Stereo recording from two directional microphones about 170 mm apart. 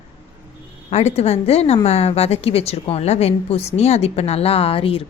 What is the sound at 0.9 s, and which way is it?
A woman's voice, 40° left (ahead or behind).